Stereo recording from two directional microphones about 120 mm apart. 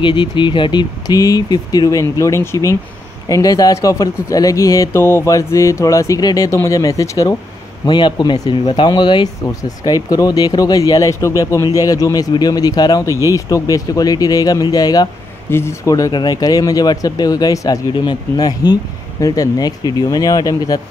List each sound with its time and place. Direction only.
0.0 s speech: 40° left (ahead or behind)
15.5 s speech: 25° left (ahead or behind)